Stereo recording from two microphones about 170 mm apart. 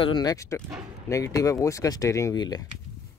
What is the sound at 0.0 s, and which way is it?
Speech, 25° left (ahead or behind).